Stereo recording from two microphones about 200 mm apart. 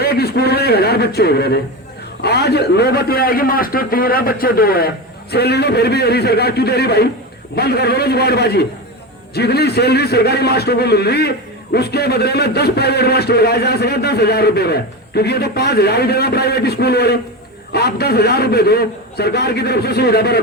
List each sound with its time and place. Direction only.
0.0 s a man's voice: 50° left (ahead or behind)